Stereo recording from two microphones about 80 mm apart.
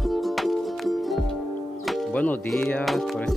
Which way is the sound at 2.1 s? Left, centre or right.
Centre.